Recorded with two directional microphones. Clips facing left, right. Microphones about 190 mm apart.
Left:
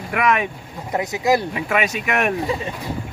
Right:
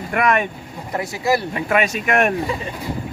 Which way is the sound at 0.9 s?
15° left (ahead or behind).